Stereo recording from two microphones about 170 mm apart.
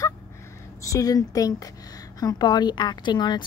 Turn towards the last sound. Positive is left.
turn(degrees=25)  # may be behind; listen again after turning